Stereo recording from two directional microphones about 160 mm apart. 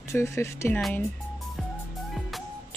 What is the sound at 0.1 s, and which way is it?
Speech, 15° left (ahead or behind).